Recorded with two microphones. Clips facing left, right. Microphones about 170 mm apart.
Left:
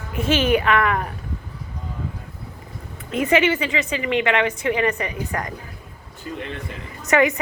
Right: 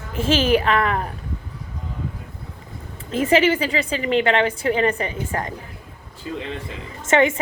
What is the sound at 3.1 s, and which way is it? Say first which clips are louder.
Speech: right 1 dB; 30° right (ahead or behind).